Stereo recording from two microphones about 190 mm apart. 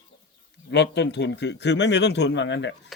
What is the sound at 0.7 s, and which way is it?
Speech, 65° left (ahead or behind).